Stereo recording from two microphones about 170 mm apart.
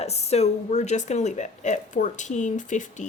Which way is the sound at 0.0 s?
40° left (ahead or behind).